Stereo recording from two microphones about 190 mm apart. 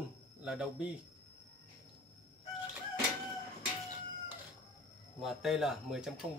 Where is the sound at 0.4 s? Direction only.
5° right (ahead or behind).